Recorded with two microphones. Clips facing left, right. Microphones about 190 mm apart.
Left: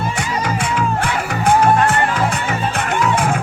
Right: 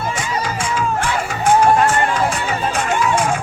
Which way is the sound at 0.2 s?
65° left (ahead or behind).